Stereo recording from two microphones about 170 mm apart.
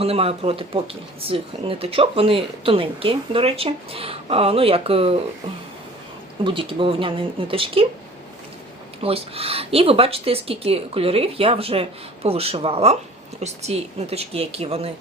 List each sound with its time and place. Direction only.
0.0 s speech: 35° right (ahead or behind)
6.4 s speech: 30° right (ahead or behind)
9.0 s speech: 35° right (ahead or behind)